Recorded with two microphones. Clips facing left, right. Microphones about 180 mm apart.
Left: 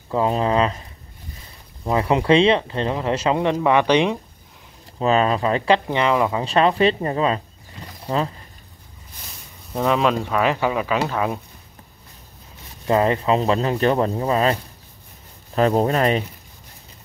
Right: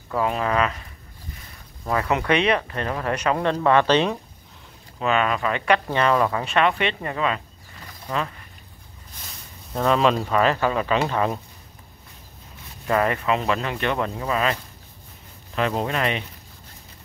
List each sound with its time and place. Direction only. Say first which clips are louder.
0.1 s speech: left 3 dB; 30° left (ahead or behind)
1.9 s speech: left 4 dB; 25° left (ahead or behind)
4.9 s speech: left 4 dB; 35° left (ahead or behind)
5.9 s speech: left 1 dB; 15° left (ahead or behind)
6.4 s speech: left 5 dB; 30° left (ahead or behind)
9.7 s speech: even; 10° left (ahead or behind)
10.4 s speech: left 1 dB; 10° left (ahead or behind)
12.8 s speech: left 3 dB; 25° left (ahead or behind)